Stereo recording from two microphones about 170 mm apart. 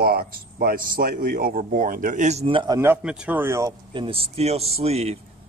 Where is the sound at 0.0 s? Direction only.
60° right (ahead or behind); by 2.8 s 30° right (ahead or behind).